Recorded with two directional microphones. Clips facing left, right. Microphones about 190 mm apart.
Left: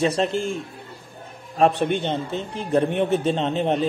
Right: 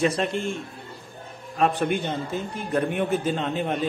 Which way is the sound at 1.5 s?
30° left (ahead or behind).